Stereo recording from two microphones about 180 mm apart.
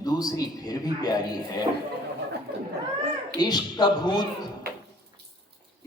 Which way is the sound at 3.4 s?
25° left (ahead or behind).